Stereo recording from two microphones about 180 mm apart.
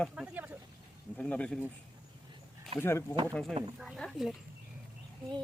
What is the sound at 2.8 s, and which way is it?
Speech, 15° left (ahead or behind).